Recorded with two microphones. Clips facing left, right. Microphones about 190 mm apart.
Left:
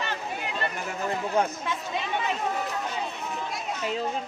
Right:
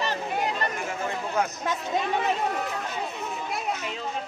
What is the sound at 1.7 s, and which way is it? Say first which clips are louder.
Chatter: right 3 dB; 45° right (ahead or behind).